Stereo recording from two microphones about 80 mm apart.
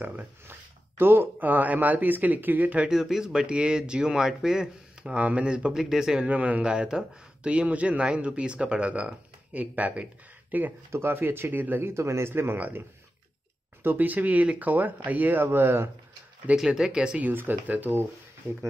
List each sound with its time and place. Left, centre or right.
0.0 s speech: right
5.1 s speech: centre
13.8 s speech: right
16.5 s speech: centre
17.3 s speech: right